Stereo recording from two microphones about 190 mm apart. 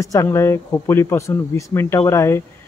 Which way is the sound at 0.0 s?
15° left (ahead or behind).